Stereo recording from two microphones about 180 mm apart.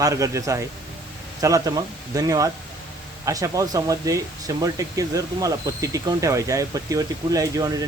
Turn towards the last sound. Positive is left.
turn(degrees=-20)  # may be behind; listen again after turning